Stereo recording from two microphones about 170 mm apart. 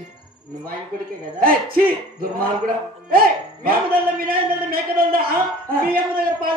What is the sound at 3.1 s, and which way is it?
Speech, 60° right (ahead or behind).